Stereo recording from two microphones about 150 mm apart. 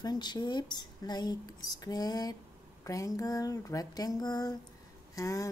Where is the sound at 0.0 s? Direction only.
30° left (ahead or behind).